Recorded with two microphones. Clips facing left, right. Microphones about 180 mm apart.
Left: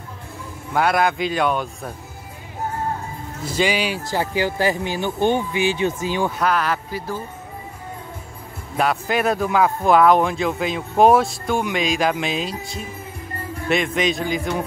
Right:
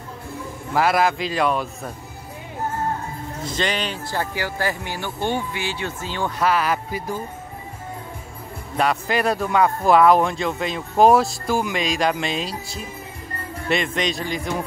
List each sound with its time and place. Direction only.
0.7 s speech: centre (ahead or behind)
3.4 s speech: 10° left (ahead or behind)
6.3 s speech: 5° right (ahead or behind)
8.7 s speech: centre (ahead or behind)